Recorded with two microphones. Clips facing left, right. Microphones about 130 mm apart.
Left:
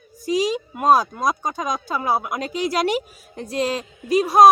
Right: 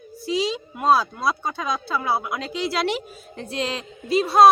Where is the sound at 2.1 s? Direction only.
45° left (ahead or behind).